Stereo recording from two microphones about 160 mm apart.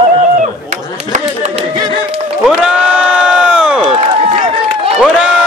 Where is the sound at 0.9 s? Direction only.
45° right (ahead or behind).